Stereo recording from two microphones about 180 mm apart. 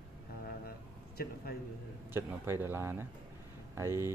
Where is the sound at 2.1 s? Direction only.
10° right (ahead or behind).